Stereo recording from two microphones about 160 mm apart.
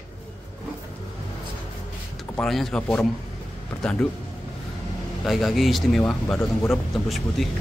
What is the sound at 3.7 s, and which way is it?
Speech, 15° left (ahead or behind).